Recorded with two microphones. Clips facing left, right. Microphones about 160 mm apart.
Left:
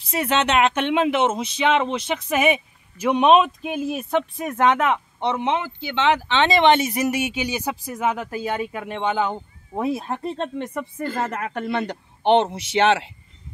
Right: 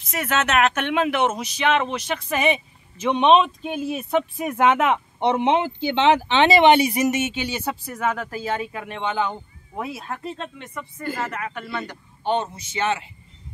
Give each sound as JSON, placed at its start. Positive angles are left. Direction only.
{"t": 0.1, "sound": "speech", "side_deg": 30}
{"t": 2.2, "sound": "speech", "side_deg": 10}